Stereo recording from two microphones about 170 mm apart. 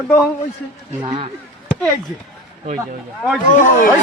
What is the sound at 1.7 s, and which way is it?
Chop, 5° left (ahead or behind).